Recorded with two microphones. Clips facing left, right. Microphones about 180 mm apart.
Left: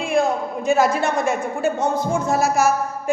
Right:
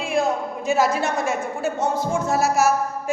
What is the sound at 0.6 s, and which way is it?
A woman's voice, 5° right (ahead or behind).